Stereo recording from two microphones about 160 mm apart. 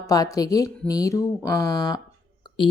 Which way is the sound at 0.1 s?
20° left (ahead or behind).